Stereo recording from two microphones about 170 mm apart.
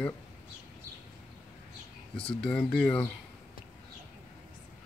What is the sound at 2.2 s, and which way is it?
Speech, 5° left (ahead or behind).